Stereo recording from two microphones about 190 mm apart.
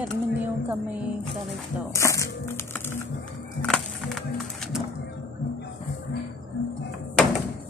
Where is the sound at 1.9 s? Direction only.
15° left (ahead or behind).